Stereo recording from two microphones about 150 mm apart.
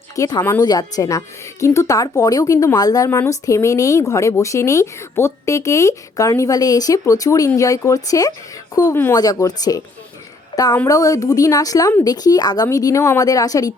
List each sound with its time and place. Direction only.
0.2 s a woman's voice: 25° left (ahead or behind)